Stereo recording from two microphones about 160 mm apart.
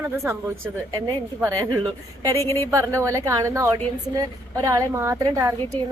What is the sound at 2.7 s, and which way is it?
A woman's voice, 20° right (ahead or behind).